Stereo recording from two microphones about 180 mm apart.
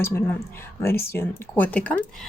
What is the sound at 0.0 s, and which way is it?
A woman's voice, 10° left (ahead or behind).